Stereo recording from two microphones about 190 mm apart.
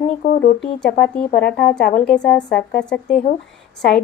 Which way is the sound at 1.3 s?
60° left (ahead or behind).